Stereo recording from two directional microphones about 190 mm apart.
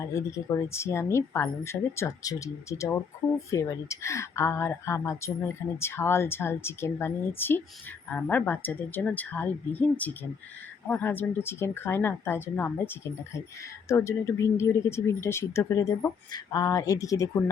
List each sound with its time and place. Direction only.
0.0 s speech: 15° left (ahead or behind)